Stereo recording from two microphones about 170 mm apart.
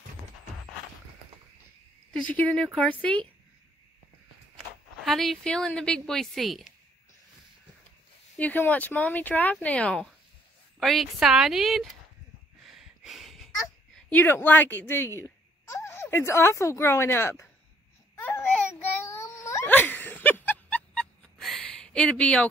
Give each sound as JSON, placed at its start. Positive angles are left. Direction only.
{"t": 2.0, "sound": "speech", "side_deg": 10}
{"t": 5.0, "sound": "a woman's voice", "side_deg": 0}
{"t": 8.4, "sound": "a woman's voice", "side_deg": 10}
{"t": 12.6, "sound": "a sound", "side_deg": 0}
{"t": 13.9, "sound": "speech", "side_deg": 10}
{"t": 18.1, "sound": "babbling", "side_deg": 10}
{"t": 19.0, "sound": "cat", "side_deg": 15}